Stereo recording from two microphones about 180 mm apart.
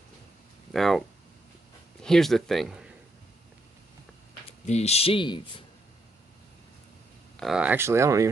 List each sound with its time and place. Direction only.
0.7 s speech: centre (ahead or behind)
2.0 s speech: centre (ahead or behind)
4.5 s speech: 35° left (ahead or behind)
7.3 s speech: 5° right (ahead or behind)